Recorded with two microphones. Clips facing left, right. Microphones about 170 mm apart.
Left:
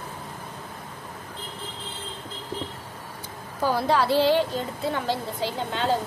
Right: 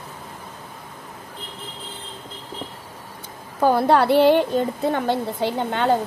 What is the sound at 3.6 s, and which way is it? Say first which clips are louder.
A woman's voice: right 6 dB; 55° right (ahead or behind).